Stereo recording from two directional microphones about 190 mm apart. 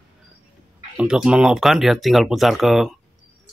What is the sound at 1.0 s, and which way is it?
Speech, 5° right (ahead or behind).